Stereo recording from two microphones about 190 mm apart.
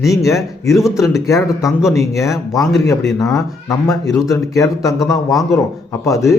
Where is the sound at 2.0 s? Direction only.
15° left (ahead or behind).